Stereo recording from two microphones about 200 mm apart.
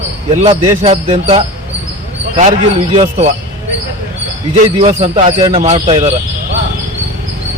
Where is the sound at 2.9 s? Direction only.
35° right (ahead or behind).